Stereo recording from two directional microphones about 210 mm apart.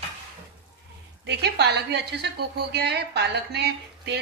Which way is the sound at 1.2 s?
55° right (ahead or behind).